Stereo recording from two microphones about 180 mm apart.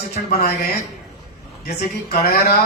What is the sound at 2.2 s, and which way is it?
Speech, 60° left (ahead or behind).